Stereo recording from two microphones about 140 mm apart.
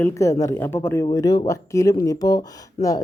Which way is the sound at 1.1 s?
25° left (ahead or behind).